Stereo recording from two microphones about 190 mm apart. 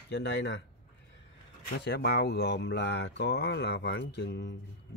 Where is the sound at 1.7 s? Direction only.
60° left (ahead or behind).